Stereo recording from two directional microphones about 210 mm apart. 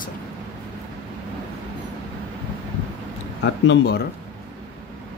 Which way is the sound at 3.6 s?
55° left (ahead or behind).